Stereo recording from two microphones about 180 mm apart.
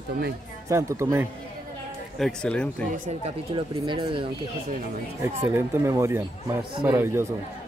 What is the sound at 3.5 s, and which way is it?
Speech, 25° right (ahead or behind).